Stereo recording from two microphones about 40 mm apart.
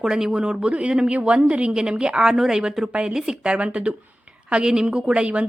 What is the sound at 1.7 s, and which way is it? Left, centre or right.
A woman's voice, centre.